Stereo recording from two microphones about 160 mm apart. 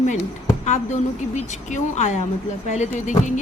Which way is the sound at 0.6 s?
45° left (ahead or behind).